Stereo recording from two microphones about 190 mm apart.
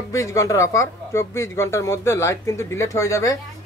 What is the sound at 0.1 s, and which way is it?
Speech, 15° left (ahead or behind).